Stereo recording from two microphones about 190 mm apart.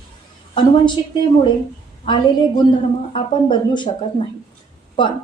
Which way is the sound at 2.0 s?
25° left (ahead or behind).